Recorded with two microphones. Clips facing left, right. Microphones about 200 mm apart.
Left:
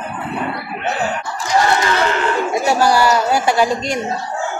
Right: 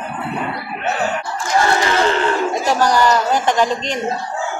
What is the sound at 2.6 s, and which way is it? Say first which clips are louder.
A man's voice: left 2 dB; 10° left (ahead or behind).